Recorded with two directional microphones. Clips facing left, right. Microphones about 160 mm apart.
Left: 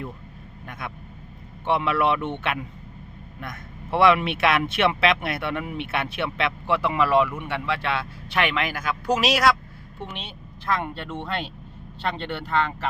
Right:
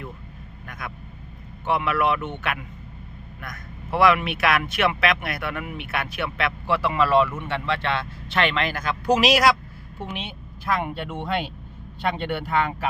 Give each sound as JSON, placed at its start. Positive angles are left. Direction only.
{"t": 0.7, "sound": "speech", "side_deg": 25}
{"t": 10.0, "sound": "speech", "side_deg": -5}